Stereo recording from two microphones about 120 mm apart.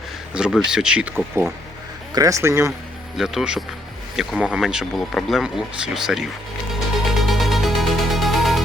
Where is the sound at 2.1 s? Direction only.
30° right (ahead or behind).